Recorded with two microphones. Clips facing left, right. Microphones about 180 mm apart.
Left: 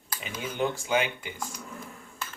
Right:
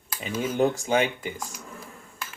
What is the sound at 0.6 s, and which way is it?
Speech, 40° right (ahead or behind).